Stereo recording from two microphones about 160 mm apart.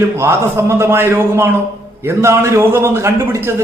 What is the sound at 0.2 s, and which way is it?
A man's voice, 15° right (ahead or behind).